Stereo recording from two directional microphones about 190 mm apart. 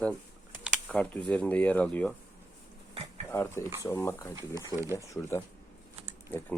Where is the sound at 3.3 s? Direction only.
15° left (ahead or behind).